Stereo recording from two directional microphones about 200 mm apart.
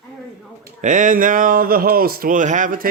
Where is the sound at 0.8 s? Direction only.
40° right (ahead or behind).